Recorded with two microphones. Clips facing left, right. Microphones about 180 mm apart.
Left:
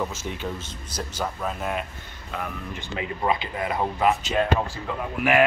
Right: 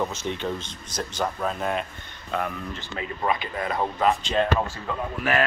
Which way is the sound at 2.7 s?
20° left (ahead or behind).